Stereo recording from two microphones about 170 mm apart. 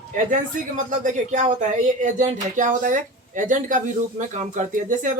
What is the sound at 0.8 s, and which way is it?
Speech, 50° right (ahead or behind).